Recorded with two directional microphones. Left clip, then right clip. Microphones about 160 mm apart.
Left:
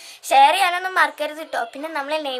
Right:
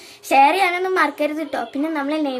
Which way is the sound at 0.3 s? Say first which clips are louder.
Even; 30° left (ahead or behind).